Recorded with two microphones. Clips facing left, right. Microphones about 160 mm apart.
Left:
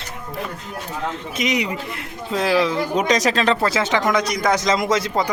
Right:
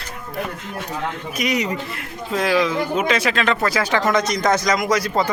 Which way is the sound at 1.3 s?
20° left (ahead or behind).